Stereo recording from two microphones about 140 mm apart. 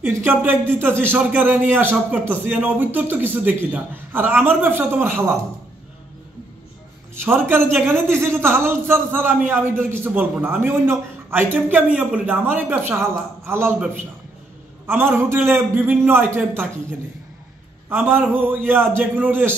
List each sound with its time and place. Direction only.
0.0 s a man's voice: 15° right (ahead or behind)
7.2 s a man's voice: 15° right (ahead or behind)
17.8 s a man's voice: 15° right (ahead or behind)